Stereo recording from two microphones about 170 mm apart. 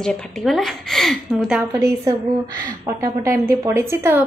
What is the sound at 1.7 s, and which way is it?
A woman's voice, 20° right (ahead or behind).